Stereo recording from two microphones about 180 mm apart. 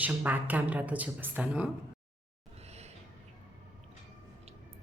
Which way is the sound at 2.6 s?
35° right (ahead or behind).